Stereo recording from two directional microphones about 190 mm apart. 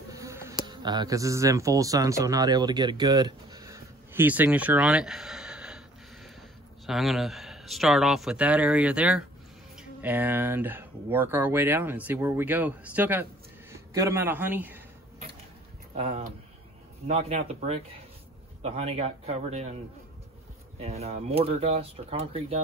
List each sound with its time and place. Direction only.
0.1 s a man's voice: 15° right (ahead or behind)
15.9 s speech: 35° right (ahead or behind)
20.8 s speech: 35° right (ahead or behind)